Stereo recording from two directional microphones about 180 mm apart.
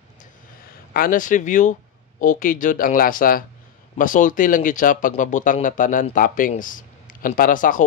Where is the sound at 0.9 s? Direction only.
50° left (ahead or behind).